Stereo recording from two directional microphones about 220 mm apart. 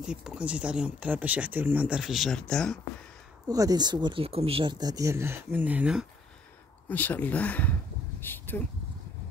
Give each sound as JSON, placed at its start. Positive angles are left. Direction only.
{"t": 0.0, "sound": "speech", "side_deg": -5}
{"t": 3.4, "sound": "speech", "side_deg": -15}
{"t": 6.9, "sound": "speech", "side_deg": 10}
{"t": 8.2, "sound": "a sound", "side_deg": 10}